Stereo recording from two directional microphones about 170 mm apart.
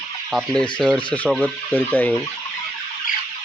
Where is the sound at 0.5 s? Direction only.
5° left (ahead or behind).